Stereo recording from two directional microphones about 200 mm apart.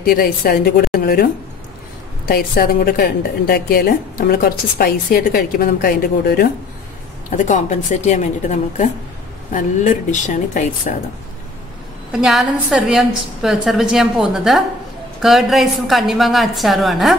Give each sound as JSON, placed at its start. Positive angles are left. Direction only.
{"t": 0.0, "sound": "a woman's voice", "side_deg": 50}
{"t": 7.2, "sound": "a woman's voice", "side_deg": 40}
{"t": 12.1, "sound": "a woman's voice", "side_deg": 0}